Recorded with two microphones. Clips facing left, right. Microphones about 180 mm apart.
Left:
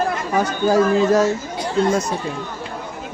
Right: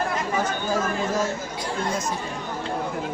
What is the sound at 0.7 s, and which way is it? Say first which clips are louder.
Speech: left 12 dB; 70° left (ahead or behind).